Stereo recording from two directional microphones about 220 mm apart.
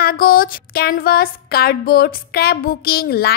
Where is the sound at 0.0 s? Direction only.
40° left (ahead or behind).